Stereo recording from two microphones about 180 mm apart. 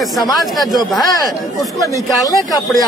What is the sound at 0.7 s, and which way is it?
Speech, 20° left (ahead or behind).